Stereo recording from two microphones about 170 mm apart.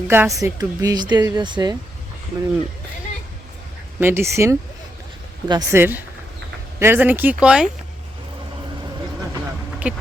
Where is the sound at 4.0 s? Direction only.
15° right (ahead or behind).